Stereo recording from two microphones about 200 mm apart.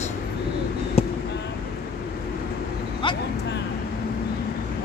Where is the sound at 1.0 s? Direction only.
30° left (ahead or behind).